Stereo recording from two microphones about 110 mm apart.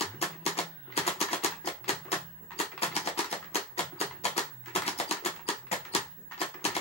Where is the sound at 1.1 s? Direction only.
70° left (ahead or behind).